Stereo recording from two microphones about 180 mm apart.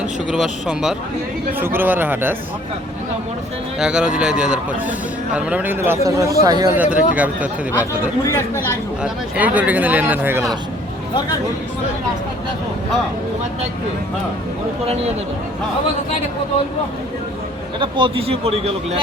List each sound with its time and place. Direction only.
0.3 s a man's voice: 5° right (ahead or behind)
3.8 s speech: 5° right (ahead or behind)
6.7 s speech: 10° right (ahead or behind)
8.2 s speech: 20° left (ahead or behind)
9.0 s speech: 10° right (ahead or behind)
17.7 s speech: 30° right (ahead or behind)